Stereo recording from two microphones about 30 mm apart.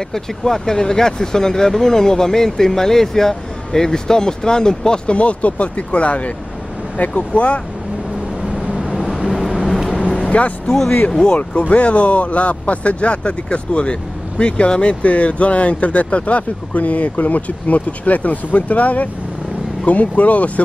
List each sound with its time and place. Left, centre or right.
0.1 s speech: centre
5.1 s speech: left
8.7 s vehicle: centre
9.9 s vehicle: left
11.1 s speech: left
11.7 s speech: left